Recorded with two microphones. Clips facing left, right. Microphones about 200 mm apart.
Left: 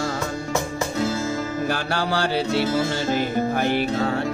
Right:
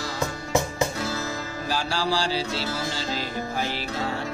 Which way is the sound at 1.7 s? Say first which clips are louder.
Right 2 dB; 60° left (ahead or behind).